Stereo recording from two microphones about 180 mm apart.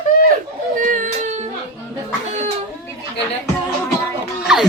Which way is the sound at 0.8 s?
45° right (ahead or behind).